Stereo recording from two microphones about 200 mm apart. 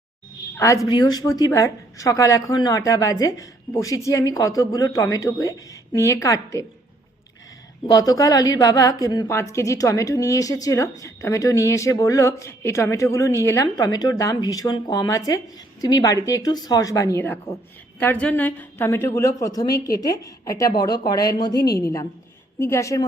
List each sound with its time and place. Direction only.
0.5 s a woman's voice: 15° left (ahead or behind)
7.9 s a woman's voice: 20° left (ahead or behind)